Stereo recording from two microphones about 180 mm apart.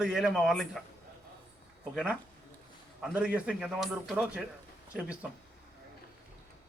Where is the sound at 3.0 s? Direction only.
5° right (ahead or behind).